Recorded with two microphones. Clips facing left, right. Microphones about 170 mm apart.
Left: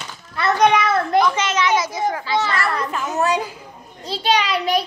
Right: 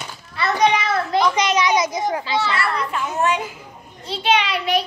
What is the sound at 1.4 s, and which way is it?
A child's voice, 15° right (ahead or behind).